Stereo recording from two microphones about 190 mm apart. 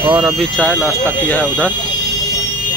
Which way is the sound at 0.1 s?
Centre (ahead or behind).